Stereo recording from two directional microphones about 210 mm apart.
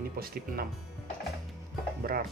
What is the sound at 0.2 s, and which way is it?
Speech, 45° right (ahead or behind).